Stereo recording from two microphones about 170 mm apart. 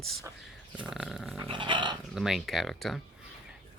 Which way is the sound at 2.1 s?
Centre (ahead or behind).